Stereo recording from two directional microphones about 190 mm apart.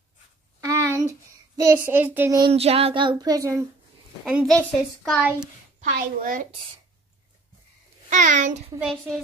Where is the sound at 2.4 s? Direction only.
30° right (ahead or behind); by 3.6 s 15° right (ahead or behind).